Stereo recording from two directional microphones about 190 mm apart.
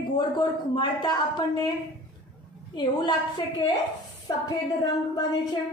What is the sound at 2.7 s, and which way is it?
Speech, 25° left (ahead or behind).